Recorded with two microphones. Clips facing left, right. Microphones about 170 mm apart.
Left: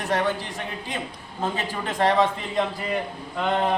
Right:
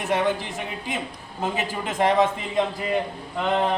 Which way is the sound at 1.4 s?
15° right (ahead or behind).